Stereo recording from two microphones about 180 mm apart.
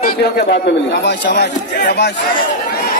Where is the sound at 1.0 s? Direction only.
70° left (ahead or behind).